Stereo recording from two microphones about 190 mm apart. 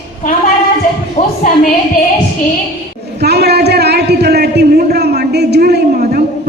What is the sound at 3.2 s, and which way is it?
A man's voice, 60° right (ahead or behind).